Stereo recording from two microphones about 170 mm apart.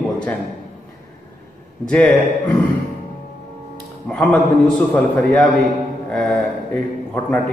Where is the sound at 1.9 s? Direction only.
5° left (ahead or behind).